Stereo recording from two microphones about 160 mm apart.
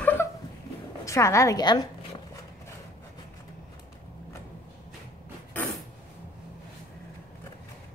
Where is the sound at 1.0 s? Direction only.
20° left (ahead or behind).